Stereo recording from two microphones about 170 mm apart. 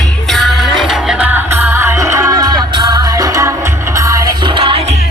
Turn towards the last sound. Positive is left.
turn(degrees=-35)  # may be behind; listen again after turning